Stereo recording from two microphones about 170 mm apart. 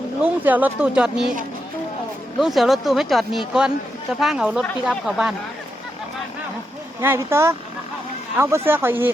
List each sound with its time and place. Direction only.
0.2 s speech: 10° right (ahead or behind)
2.4 s speech: centre (ahead or behind)
7.0 s speech: 15° right (ahead or behind)